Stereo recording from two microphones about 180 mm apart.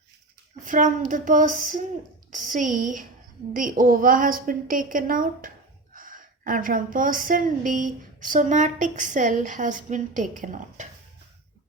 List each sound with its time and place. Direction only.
0.6 s a woman's voice: 45° right (ahead or behind)